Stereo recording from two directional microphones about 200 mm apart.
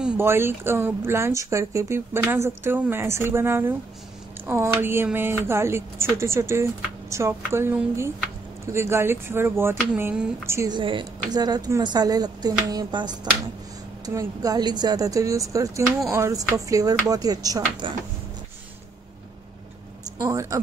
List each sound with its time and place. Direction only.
0.0 s speech: 10° right (ahead or behind)
20.2 s speech: 15° right (ahead or behind)